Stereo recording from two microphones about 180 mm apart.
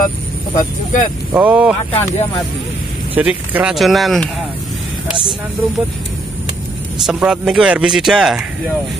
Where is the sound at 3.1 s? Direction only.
10° right (ahead or behind).